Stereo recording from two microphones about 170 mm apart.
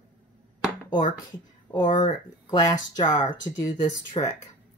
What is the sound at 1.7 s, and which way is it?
Speech, 25° left (ahead or behind).